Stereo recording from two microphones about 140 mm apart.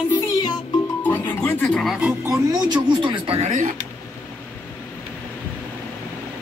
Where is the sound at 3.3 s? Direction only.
60° right (ahead or behind).